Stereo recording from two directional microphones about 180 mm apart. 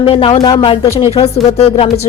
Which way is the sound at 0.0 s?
30° left (ahead or behind).